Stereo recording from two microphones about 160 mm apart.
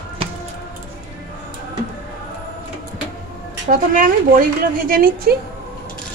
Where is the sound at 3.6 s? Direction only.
55° right (ahead or behind).